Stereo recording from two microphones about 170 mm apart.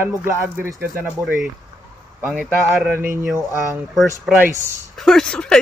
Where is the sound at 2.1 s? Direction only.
10° right (ahead or behind).